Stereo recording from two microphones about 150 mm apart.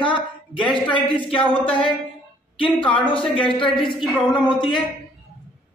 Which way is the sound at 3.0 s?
35° left (ahead or behind).